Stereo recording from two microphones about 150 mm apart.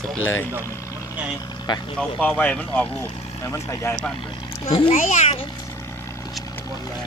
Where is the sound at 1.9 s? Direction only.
10° left (ahead or behind).